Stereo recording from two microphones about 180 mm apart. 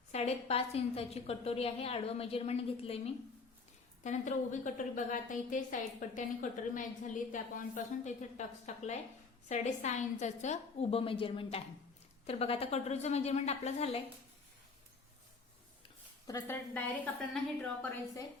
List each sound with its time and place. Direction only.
0.1 s a woman's voice: 35° left (ahead or behind)
16.2 s a woman's voice: 15° left (ahead or behind)